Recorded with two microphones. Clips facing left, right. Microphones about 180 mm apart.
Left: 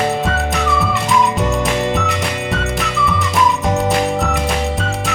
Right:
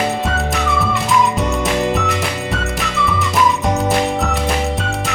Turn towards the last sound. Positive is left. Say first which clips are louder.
# even
turn(degrees=0)  # may be behind; listen again after turning